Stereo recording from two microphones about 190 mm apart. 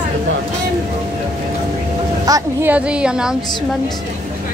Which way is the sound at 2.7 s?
5° right (ahead or behind).